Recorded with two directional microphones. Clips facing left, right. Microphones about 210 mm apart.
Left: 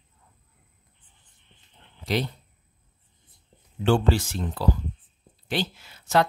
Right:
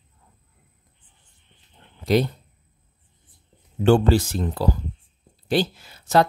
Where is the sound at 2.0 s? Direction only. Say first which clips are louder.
Right 7 dB; 45° right (ahead or behind).